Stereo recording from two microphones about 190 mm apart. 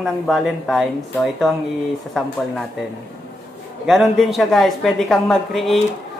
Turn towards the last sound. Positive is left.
turn(degrees=0)  # may be behind; listen again after turning